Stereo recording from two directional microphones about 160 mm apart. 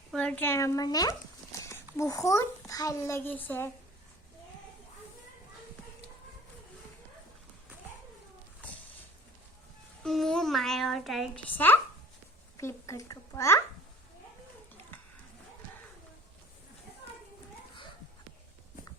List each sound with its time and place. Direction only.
0.1 s a child's voice: 5° left (ahead or behind); by 1.1 s 25° left (ahead or behind)
1.5 s horse: 20° left (ahead or behind)
2.0 s a child's voice: 20° left (ahead or behind)
10.0 s speech: centre (ahead or behind)
11.5 s a child's voice: 10° left (ahead or behind)